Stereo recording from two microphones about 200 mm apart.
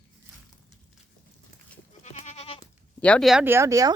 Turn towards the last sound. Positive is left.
turn(degrees=-15)  # may be behind; listen again after turning